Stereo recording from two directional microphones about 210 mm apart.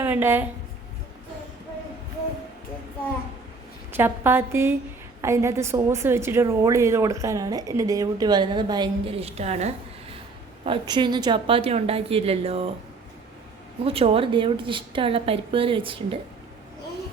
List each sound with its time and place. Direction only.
0.0 s a woman's voice: 10° right (ahead or behind)
3.9 s a woman's voice: 10° right (ahead or behind); by 9.7 s 30° right (ahead or behind)
10.7 s a woman's voice: 20° right (ahead or behind)
13.8 s a woman's voice: 25° right (ahead or behind)